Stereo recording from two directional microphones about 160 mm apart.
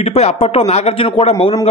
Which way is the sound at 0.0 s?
40° left (ahead or behind).